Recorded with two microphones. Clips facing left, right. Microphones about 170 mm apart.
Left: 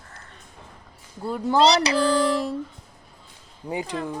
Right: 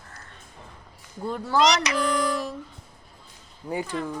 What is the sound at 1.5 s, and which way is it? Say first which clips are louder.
Speech: left 4 dB; 30° left (ahead or behind).